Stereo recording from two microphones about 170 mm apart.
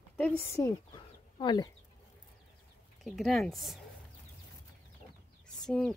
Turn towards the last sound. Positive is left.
turn(degrees=5)  # may be behind; listen again after turning